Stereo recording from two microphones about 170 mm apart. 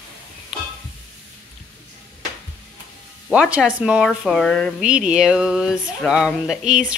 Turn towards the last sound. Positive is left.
turn(degrees=-5)  # may be behind; listen again after turning